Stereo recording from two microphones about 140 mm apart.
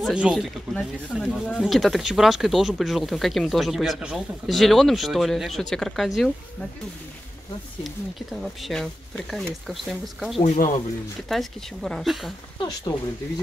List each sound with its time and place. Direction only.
0.0 s speech: 5° right (ahead or behind)
0.7 s speech: 5° left (ahead or behind)
7.8 s speech: centre (ahead or behind)
10.4 s speech: 65° left (ahead or behind)
11.2 s speech: centre (ahead or behind)
12.5 s speech: 25° left (ahead or behind)